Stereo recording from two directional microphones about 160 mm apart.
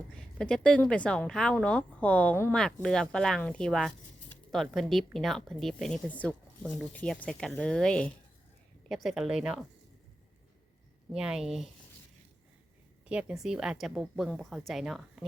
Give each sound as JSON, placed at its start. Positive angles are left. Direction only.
{"t": 0.2, "sound": "a woman's voice", "side_deg": 5}
{"t": 11.1, "sound": "speech", "side_deg": -5}
{"t": 13.1, "sound": "speech", "side_deg": -5}